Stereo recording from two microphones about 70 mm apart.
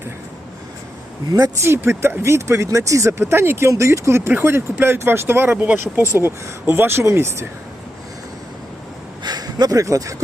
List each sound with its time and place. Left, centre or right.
1.6 s speech: right
3.7 s speech: right
4.3 s speech: right
9.2 s speech: right